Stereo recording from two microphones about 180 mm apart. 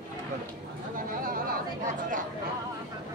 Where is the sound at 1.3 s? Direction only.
50° right (ahead or behind).